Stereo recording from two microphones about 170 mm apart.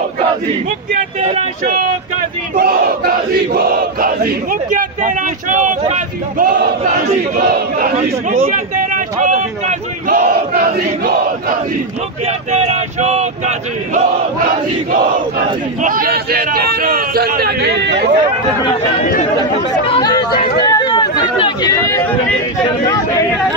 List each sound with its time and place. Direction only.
2.5 s a man's voice: 60° right (ahead or behind)
8.5 s a sound: 50° right (ahead or behind)
12.3 s chant: 40° right (ahead or behind)
15.8 s a man's voice: 55° right (ahead or behind); by 18.1 s 80° right
19.9 s chatter: 25° left (ahead or behind)
20.6 s speech: 25° left (ahead or behind)